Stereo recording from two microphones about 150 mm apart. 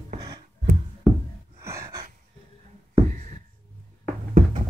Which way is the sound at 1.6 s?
20° right (ahead or behind).